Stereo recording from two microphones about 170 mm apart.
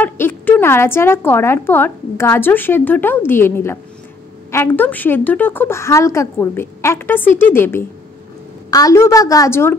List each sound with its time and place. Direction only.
0.0 s a woman's voice: 10° left (ahead or behind)